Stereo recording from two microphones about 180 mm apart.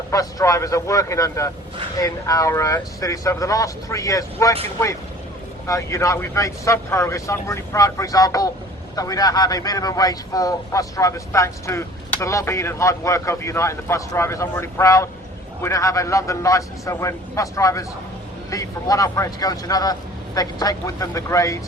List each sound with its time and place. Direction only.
0.1 s speech: 20° left (ahead or behind)
5.6 s a man's voice: 15° left (ahead or behind)